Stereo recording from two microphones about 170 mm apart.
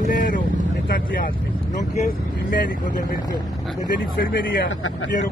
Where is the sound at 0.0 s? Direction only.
50° left (ahead or behind).